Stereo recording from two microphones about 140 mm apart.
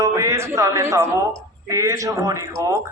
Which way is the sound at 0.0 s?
25° right (ahead or behind).